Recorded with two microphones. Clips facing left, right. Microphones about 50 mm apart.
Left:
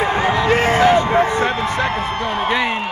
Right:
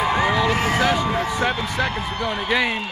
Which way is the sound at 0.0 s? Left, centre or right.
Left.